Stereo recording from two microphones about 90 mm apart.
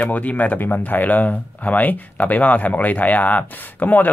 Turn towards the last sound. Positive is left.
turn(degrees=20)  # may be behind; listen again after turning